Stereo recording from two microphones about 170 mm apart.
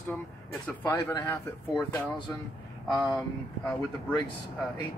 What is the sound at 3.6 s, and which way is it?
Speech, 5° left (ahead or behind).